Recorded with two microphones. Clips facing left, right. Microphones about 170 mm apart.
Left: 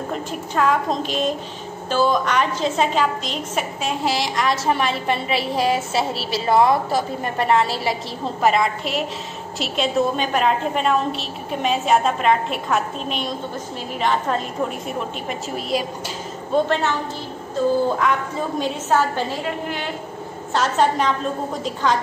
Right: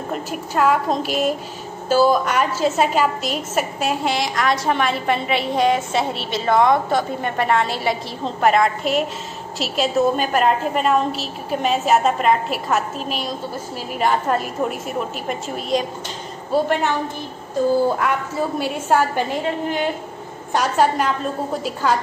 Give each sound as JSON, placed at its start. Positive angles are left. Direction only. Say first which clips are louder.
{"t": 0.1, "sound": "a woman's voice", "louder": "right 4 dB", "side_deg": -5}
{"t": 7.2, "sound": "a woman's voice", "louder": "left 2 dB", "side_deg": 30}
{"t": 7.8, "sound": "a woman's voice", "louder": "right 1 dB", "side_deg": 0}
{"t": 16.5, "sound": "a woman's voice", "louder": "even", "side_deg": -10}
{"t": 18.0, "sound": "a woman's voice", "louder": "even", "side_deg": -10}
{"t": 20.5, "sound": "a woman's voice", "louder": "right 1 dB", "side_deg": -10}